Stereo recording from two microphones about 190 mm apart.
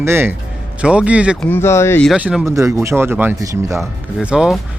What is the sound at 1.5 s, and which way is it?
Speech, 10° left (ahead or behind).